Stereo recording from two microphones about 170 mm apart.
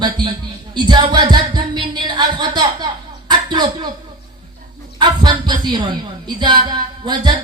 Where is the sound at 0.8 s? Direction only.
25° right (ahead or behind).